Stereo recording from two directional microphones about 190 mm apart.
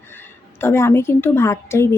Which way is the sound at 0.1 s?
10° left (ahead or behind).